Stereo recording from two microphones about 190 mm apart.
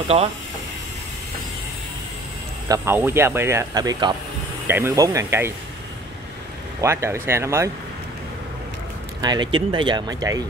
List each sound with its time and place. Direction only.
2.7 s speech: 15° right (ahead or behind)
6.8 s speech: 15° right (ahead or behind)
9.2 s speech: 20° right (ahead or behind)